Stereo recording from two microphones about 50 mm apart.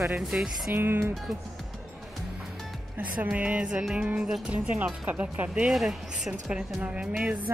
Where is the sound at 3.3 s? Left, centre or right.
Right.